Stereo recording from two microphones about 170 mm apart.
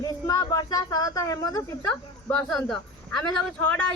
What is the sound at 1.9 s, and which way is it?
Speech, 5° left (ahead or behind).